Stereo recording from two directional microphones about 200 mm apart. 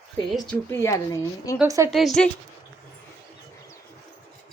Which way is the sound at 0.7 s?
15° left (ahead or behind).